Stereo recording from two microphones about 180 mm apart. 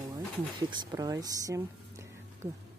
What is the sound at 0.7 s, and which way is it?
Speech, 20° right (ahead or behind).